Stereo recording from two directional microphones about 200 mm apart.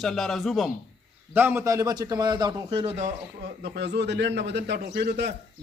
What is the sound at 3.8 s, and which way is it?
Speech, 60° right (ahead or behind).